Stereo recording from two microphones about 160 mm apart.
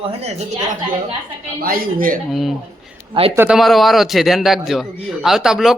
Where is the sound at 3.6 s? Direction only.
Centre (ahead or behind).